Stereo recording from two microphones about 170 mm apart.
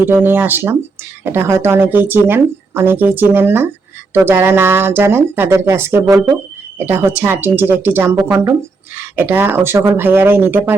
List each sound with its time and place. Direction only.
0.0 s speech: 10° right (ahead or behind)
8.1 s a woman's voice: 25° right (ahead or behind)
9.0 s speech: 10° right (ahead or behind)